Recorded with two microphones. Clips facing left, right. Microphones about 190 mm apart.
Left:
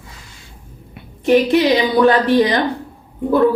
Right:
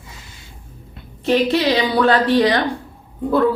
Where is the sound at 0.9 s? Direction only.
15° left (ahead or behind).